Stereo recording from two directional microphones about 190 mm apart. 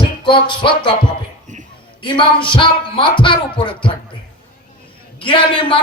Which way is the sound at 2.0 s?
25° left (ahead or behind).